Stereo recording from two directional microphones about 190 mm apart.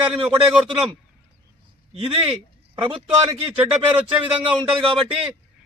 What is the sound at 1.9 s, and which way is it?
A man's voice, 30° right (ahead or behind).